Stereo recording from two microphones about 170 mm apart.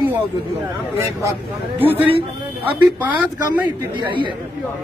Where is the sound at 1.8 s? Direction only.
10° right (ahead or behind).